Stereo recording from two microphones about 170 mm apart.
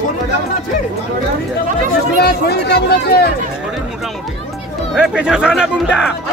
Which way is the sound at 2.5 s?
70° left (ahead or behind).